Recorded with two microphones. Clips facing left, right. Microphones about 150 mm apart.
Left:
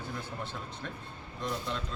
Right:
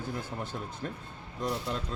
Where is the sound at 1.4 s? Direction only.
40° right (ahead or behind).